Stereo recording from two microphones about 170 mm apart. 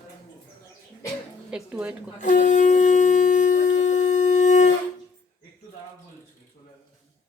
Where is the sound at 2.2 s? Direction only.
45° left (ahead or behind).